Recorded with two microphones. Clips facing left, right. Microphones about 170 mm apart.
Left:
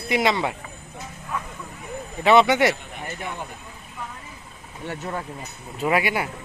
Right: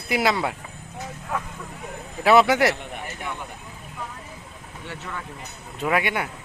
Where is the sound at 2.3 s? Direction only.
Centre (ahead or behind).